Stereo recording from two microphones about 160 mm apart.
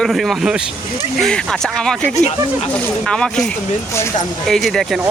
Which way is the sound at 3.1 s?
5° left (ahead or behind).